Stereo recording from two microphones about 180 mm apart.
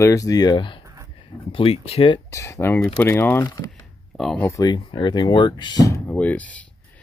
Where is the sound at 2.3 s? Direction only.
15° left (ahead or behind).